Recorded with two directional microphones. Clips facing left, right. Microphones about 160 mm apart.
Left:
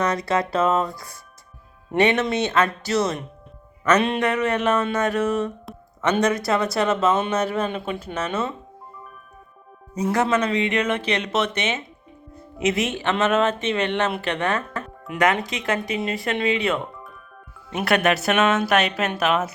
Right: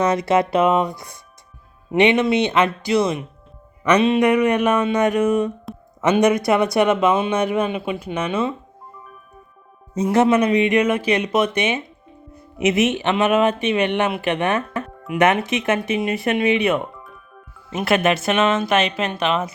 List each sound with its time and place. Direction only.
0.0 s speech: 20° right (ahead or behind)
9.9 s speech: 25° right (ahead or behind)
17.7 s speech: centre (ahead or behind)